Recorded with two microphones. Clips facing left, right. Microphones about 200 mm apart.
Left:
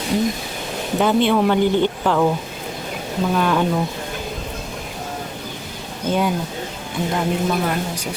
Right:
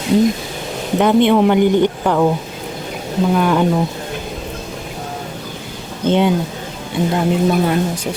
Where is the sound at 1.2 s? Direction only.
15° right (ahead or behind).